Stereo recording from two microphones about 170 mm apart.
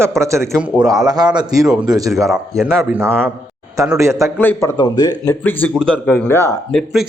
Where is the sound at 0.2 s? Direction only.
15° right (ahead or behind).